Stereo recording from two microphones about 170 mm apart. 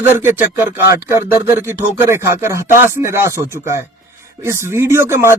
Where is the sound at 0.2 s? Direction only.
10° right (ahead or behind).